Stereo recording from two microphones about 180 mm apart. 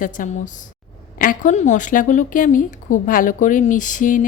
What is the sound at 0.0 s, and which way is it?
Speech, 45° left (ahead or behind).